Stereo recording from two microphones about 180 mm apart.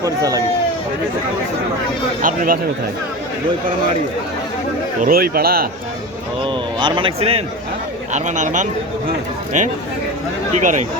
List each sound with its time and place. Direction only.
0.0 s speech: 20° right (ahead or behind)
2.2 s speech: 50° right (ahead or behind)
4.9 s a man's voice: 55° right (ahead or behind)
6.4 s speech: 25° right (ahead or behind); by 10.8 s 45° right (ahead or behind)